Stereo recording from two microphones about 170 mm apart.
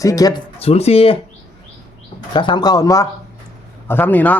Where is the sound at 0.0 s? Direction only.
20° left (ahead or behind).